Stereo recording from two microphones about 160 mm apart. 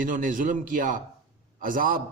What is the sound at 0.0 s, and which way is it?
A man's voice, 55° right (ahead or behind).